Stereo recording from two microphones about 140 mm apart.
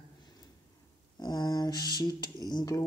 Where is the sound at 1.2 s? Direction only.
30° left (ahead or behind).